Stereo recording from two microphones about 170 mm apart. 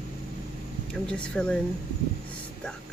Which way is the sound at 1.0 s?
5° left (ahead or behind).